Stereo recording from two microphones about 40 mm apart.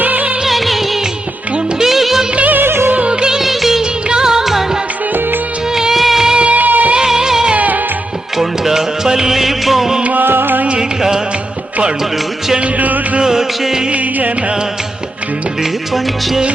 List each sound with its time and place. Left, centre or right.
0.0 s music: right
0.4 s music: centre
1.8 s music of bollywood: centre
2.5 s music: right
3.1 s music: centre
3.4 s music of bollywood: centre
6.5 s music: right
6.9 s music: centre
7.5 s music of bollywood: right
8.4 s music: centre
10.0 s music: right
10.2 s music: right
13.2 s music: centre
13.9 s music: right